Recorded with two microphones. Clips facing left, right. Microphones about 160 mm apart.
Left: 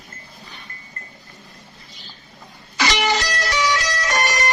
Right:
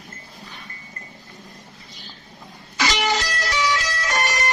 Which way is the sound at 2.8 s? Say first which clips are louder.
Left 2 dB; 70° left (ahead or behind).